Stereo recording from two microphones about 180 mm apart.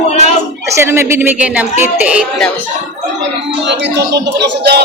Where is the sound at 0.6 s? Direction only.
15° right (ahead or behind).